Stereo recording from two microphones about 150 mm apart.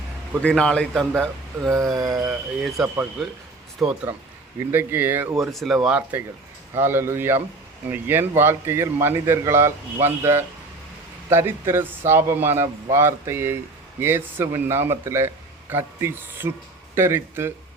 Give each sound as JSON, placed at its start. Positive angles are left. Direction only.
{"t": 0.4, "sound": "a man's voice", "side_deg": 5}
{"t": 1.7, "sound": "speech", "side_deg": -20}
{"t": 2.2, "sound": "a man's voice", "side_deg": -5}
{"t": 5.5, "sound": "a man's voice", "side_deg": 0}